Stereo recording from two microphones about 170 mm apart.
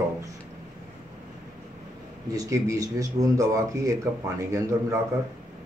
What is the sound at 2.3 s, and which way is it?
Speech, 20° right (ahead or behind).